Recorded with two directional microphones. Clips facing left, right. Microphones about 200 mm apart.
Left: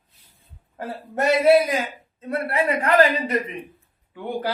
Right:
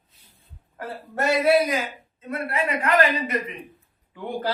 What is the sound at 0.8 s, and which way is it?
Speech, 20° left (ahead or behind).